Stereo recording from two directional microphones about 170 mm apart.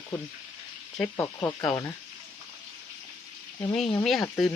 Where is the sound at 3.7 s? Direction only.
Centre (ahead or behind).